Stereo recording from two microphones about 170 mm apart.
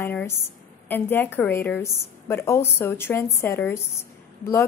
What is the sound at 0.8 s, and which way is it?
A woman's voice, 10° left (ahead or behind).